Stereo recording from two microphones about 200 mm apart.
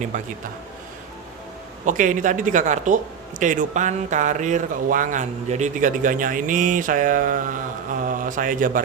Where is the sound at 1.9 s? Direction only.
40° right (ahead or behind).